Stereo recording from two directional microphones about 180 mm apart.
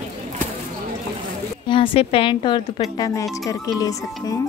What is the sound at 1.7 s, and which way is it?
A woman's voice, 30° left (ahead or behind).